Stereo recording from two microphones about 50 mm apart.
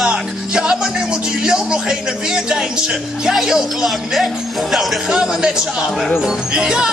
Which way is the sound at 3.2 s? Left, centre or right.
Centre.